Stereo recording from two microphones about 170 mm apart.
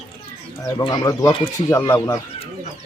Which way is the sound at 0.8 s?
20° left (ahead or behind).